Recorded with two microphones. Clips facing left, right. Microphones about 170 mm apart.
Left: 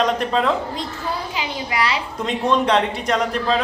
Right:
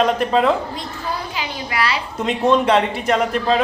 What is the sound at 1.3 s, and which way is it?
Speech, 20° left (ahead or behind).